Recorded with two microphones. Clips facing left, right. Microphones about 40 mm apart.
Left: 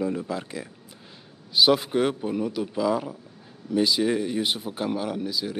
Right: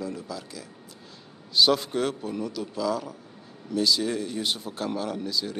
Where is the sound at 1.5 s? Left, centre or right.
Centre.